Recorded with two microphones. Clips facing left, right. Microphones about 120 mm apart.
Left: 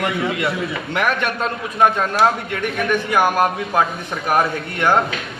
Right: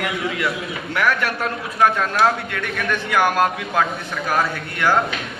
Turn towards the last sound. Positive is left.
turn(degrees=20)  # may be behind; listen again after turning